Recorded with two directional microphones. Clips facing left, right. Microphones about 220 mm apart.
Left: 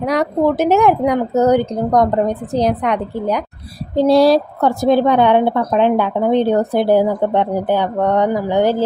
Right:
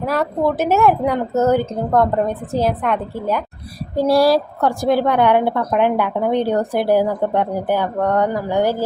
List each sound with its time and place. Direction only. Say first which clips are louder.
0.0 s a woman's voice: left 3 dB; 15° left (ahead or behind)